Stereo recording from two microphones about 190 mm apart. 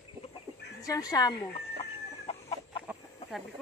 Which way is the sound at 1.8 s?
35° left (ahead or behind).